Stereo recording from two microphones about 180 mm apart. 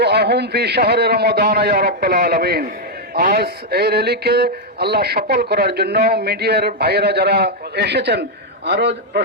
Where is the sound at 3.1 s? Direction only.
55° right (ahead or behind).